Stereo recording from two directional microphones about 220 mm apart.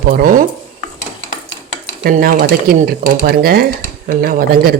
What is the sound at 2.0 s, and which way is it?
Speech, 40° right (ahead or behind).